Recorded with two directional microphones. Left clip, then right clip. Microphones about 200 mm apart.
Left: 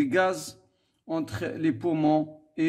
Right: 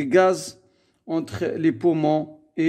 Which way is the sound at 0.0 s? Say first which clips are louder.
Right 6 dB; 35° right (ahead or behind).